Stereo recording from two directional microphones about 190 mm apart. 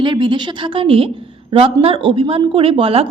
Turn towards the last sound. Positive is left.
turn(degrees=-30)  # may be behind; listen again after turning